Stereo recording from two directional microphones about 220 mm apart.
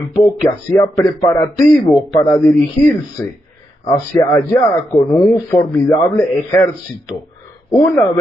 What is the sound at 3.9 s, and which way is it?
Speech, 15° left (ahead or behind).